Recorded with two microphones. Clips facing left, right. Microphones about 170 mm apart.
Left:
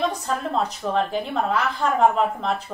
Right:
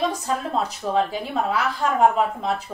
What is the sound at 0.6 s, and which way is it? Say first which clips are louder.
A woman's voice: right 1 dB; 5° right (ahead or behind).